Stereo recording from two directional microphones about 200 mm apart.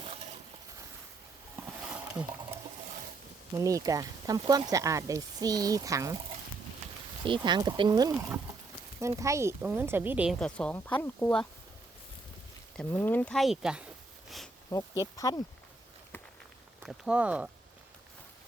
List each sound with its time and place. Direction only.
0.0 s a sound: 30° right (ahead or behind)
1.5 s wild animals: 10° right (ahead or behind)
3.5 s speech: 15° right (ahead or behind)
7.3 s speech: 25° right (ahead or behind); by 10.3 s 10° right (ahead or behind)
10.4 s speech: 5° left (ahead or behind)
12.7 s speech: 10° left (ahead or behind)
14.3 s a sound: centre (ahead or behind)
14.7 s speech: 15° left (ahead or behind)
16.8 s speech: 5° right (ahead or behind)